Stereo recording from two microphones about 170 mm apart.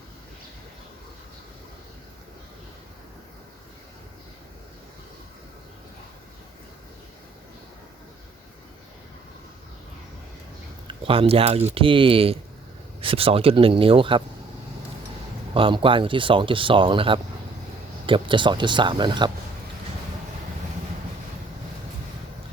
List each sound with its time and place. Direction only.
10.8 s speech: 30° right (ahead or behind)
15.5 s speech: 30° right (ahead or behind)